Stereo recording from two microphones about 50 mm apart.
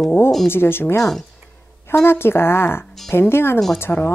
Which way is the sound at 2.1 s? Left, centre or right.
Left.